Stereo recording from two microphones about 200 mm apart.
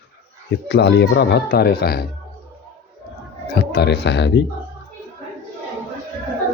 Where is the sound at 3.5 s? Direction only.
55° left (ahead or behind).